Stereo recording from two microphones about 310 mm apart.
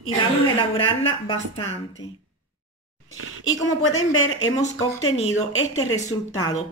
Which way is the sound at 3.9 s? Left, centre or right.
Left.